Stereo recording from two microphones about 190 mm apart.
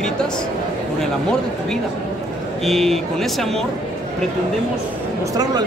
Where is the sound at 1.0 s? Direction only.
5° left (ahead or behind).